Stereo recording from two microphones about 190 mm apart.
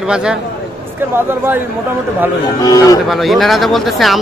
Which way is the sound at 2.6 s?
20° left (ahead or behind).